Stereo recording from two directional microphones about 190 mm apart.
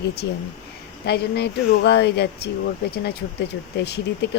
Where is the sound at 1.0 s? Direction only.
60° left (ahead or behind).